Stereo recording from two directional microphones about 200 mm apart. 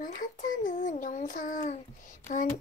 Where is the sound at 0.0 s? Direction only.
40° left (ahead or behind).